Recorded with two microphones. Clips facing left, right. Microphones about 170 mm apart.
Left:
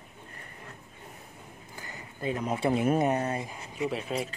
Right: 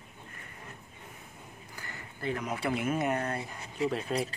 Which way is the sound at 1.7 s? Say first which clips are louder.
Left 2 dB; 20° left (ahead or behind).